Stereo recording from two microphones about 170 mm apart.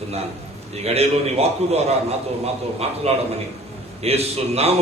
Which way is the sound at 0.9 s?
40° right (ahead or behind).